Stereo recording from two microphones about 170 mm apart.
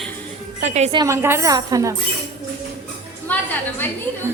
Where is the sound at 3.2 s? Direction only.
10° left (ahead or behind).